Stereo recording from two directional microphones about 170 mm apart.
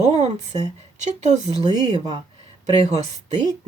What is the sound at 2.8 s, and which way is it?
Speech, 40° right (ahead or behind).